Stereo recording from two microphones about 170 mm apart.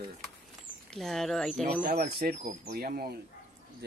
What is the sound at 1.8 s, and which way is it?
Speech, 65° right (ahead or behind).